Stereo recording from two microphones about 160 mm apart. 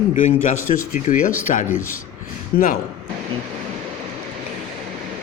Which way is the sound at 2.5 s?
65° left (ahead or behind).